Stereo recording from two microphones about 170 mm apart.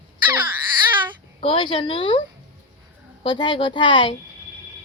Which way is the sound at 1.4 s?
30° left (ahead or behind).